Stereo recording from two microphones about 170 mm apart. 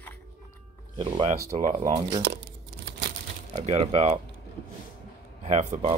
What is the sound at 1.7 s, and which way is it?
Speech, 50° right (ahead or behind).